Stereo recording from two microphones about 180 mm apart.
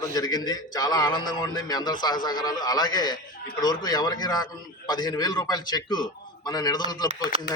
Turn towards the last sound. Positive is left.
turn(degrees=25)  # may be behind; listen again after turning